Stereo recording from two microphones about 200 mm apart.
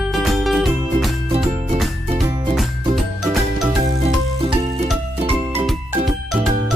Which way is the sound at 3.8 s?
30° right (ahead or behind).